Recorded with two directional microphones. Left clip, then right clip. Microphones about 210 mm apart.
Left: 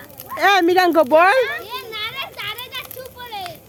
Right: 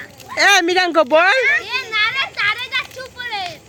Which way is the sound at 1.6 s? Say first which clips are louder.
Right 9 dB; 20° right (ahead or behind).